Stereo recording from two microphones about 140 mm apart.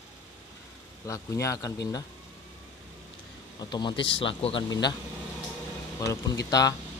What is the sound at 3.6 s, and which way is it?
Speech, 30° left (ahead or behind).